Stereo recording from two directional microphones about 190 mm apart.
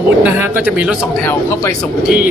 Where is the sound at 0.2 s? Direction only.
10° right (ahead or behind).